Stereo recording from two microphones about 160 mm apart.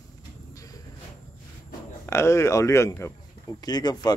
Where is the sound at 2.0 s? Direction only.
15° left (ahead or behind).